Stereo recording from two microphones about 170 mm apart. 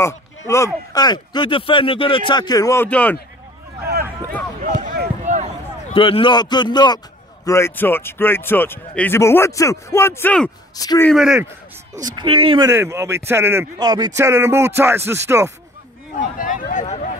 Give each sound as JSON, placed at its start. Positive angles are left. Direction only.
{"t": 0.0, "sound": "speech", "side_deg": 15}
{"t": 5.2, "sound": "a sound", "side_deg": -45}
{"t": 5.9, "sound": "a man's voice", "side_deg": 30}
{"t": 10.8, "sound": "speech", "side_deg": 20}
{"t": 11.1, "sound": "speech", "side_deg": 0}
{"t": 12.0, "sound": "speech", "side_deg": -30}
{"t": 12.6, "sound": "a man's voice", "side_deg": -15}
{"t": 16.3, "sound": "speech", "side_deg": 55}